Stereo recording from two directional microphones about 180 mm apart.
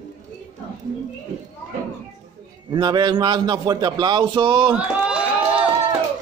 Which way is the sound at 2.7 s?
25° right (ahead or behind).